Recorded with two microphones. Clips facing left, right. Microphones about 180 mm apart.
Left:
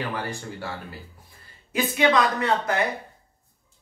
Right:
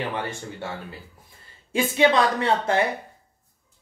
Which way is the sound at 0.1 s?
25° right (ahead or behind).